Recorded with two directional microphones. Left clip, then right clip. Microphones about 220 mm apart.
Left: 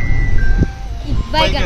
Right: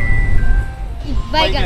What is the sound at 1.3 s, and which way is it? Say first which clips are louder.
Speech: even; centre (ahead or behind).